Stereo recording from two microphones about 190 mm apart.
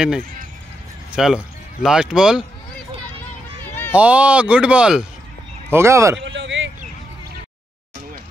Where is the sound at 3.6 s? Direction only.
10° left (ahead or behind).